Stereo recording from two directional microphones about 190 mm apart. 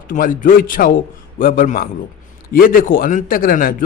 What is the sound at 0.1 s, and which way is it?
A man's voice, 45° left (ahead or behind).